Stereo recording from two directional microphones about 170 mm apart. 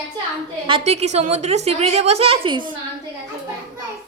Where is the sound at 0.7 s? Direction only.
40° right (ahead or behind).